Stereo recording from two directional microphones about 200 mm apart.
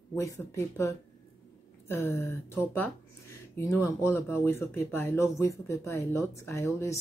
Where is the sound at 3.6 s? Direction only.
15° left (ahead or behind).